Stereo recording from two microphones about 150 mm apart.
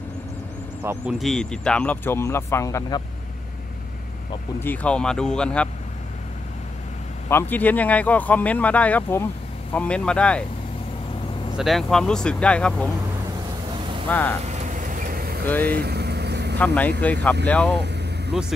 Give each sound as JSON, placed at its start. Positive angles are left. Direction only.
{"t": 1.1, "sound": "speech", "side_deg": 0}
{"t": 4.6, "sound": "speech", "side_deg": 10}
{"t": 7.2, "sound": "speech", "side_deg": 15}
{"t": 11.5, "sound": "speech", "side_deg": 0}
{"t": 14.1, "sound": "speech", "side_deg": 10}
{"t": 14.4, "sound": "vehicle", "side_deg": -50}
{"t": 15.4, "sound": "speech", "side_deg": 10}
{"t": 15.7, "sound": "vehicle", "side_deg": -90}
{"t": 16.5, "sound": "speech", "side_deg": 10}